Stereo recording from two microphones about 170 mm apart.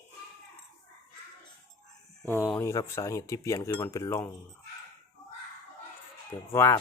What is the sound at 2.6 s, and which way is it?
Speech, 15° left (ahead or behind).